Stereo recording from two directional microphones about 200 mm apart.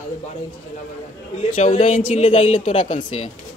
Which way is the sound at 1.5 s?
30° left (ahead or behind).